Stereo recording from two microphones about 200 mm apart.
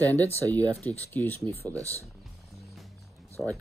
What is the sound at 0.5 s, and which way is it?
Speech, 10° left (ahead or behind).